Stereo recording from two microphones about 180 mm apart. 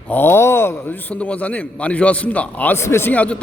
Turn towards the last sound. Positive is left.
turn(degrees=10)  # may be behind; listen again after turning